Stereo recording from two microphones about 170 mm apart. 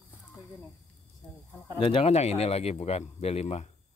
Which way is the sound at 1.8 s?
30° left (ahead or behind).